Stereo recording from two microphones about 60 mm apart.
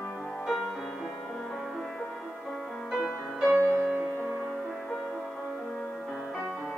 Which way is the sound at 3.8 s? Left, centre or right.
Centre.